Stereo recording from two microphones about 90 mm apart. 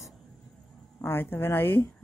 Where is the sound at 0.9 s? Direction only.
25° left (ahead or behind).